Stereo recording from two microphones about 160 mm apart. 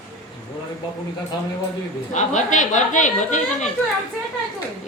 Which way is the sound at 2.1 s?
50° left (ahead or behind).